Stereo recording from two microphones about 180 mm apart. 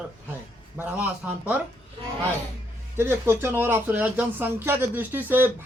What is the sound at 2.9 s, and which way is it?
Speech, 15° right (ahead or behind).